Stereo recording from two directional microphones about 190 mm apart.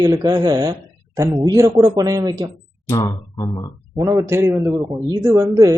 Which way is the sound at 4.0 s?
15° right (ahead or behind).